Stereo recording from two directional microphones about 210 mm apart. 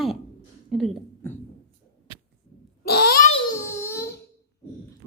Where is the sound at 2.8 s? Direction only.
50° left (ahead or behind).